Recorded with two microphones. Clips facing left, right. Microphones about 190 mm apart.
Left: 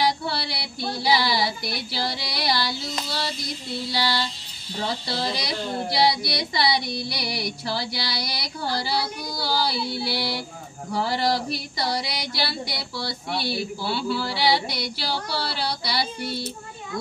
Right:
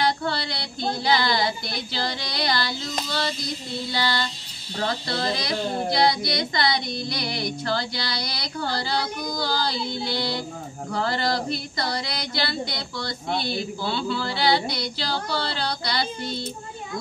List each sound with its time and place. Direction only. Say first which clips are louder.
0.0 s music: even; 10° left (ahead or behind)
0.7 s carnatic music: right 3 dB; 20° right (ahead or behind)
1.0 s female singing: even; 10° left (ahead or behind)
5.9 s female singing: left 1 dB; 10° left (ahead or behind)